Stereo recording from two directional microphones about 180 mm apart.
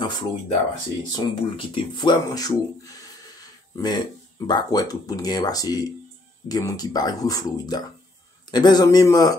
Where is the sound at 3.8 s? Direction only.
25° left (ahead or behind).